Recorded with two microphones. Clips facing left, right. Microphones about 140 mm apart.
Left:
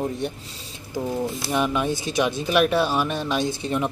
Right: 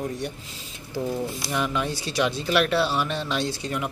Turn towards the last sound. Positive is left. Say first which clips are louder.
# left 4 dB
turn(degrees=25)  # may be behind; listen again after turning